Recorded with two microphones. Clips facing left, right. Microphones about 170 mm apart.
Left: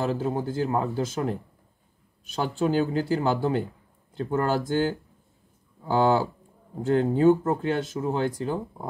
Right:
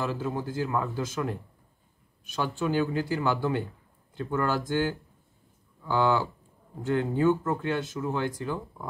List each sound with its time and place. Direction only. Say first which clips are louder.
0.0 s speech: left 4 dB; 35° left (ahead or behind)
2.3 s speech: left 3 dB; 35° left (ahead or behind)